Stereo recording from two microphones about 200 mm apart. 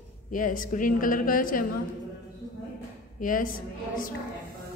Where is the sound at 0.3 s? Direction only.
45° left (ahead or behind).